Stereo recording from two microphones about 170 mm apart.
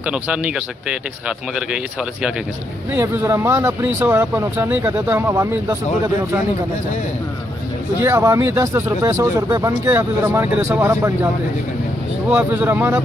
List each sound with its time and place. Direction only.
0.0 s speech: 5° right (ahead or behind)
2.9 s speech: 10° right (ahead or behind)
8.0 s speech: 15° right (ahead or behind)
12.3 s speech: 10° right (ahead or behind)